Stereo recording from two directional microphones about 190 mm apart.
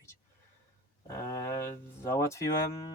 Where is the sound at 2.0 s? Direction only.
15° left (ahead or behind).